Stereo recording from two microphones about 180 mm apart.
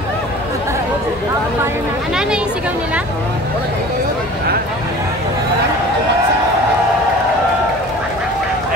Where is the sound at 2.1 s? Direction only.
5° right (ahead or behind).